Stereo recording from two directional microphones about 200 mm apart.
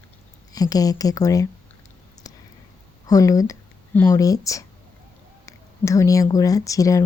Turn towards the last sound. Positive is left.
turn(degrees=15)  # may be behind; listen again after turning